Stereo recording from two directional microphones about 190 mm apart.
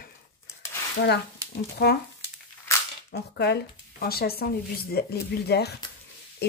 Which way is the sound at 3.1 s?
60° left (ahead or behind).